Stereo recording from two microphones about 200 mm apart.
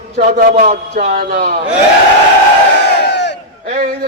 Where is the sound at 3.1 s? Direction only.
60° left (ahead or behind).